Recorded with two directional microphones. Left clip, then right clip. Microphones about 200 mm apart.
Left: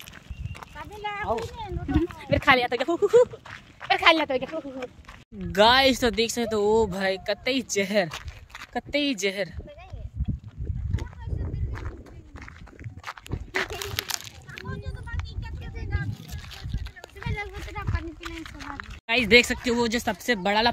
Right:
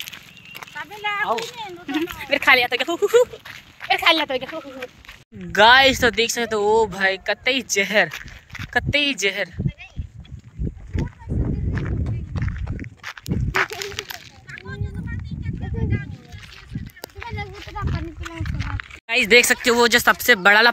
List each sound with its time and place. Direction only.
0.6 s speech: 5° right (ahead or behind)
13.0 s walk: centre (ahead or behind)
13.9 s a sound: 45° left (ahead or behind)
18.4 s run: 10° right (ahead or behind)
19.0 s speech: 10° left (ahead or behind)